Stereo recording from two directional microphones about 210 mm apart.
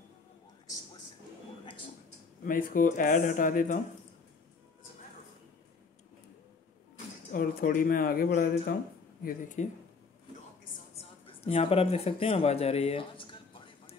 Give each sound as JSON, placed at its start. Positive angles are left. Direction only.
{"t": 2.4, "sound": "a man's voice", "side_deg": 40}
{"t": 7.3, "sound": "a man's voice", "side_deg": 40}
{"t": 11.0, "sound": "a sound", "side_deg": 30}